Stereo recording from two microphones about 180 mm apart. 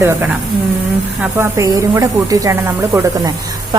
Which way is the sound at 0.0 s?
10° right (ahead or behind).